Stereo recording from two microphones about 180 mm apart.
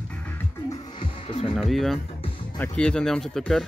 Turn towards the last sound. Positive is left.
turn(degrees=5)  # may be behind; listen again after turning